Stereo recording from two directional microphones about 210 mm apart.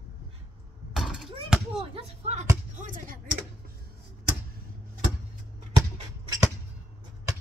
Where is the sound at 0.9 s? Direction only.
Centre (ahead or behind).